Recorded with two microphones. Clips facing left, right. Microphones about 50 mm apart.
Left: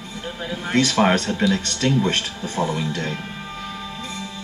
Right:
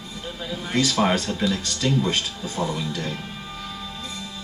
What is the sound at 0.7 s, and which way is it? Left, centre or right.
Speech, left.